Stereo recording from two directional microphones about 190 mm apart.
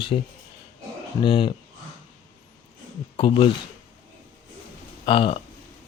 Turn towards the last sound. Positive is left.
turn(degrees=30)  # may be behind; listen again after turning